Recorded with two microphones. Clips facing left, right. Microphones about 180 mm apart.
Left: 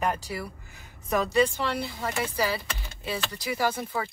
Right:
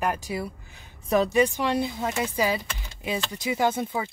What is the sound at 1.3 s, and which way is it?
Speech, 15° right (ahead or behind).